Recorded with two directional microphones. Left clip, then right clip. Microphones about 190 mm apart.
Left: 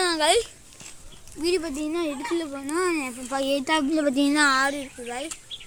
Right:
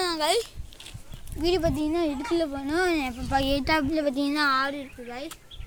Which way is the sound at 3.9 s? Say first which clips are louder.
Left 3 dB; 55° left (ahead or behind).